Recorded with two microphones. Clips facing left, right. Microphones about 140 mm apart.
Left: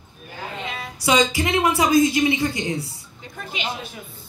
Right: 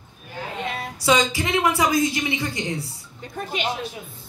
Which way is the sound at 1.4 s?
20° left (ahead or behind).